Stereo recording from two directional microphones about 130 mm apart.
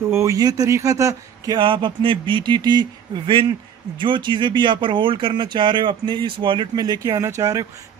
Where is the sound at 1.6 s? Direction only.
40° right (ahead or behind).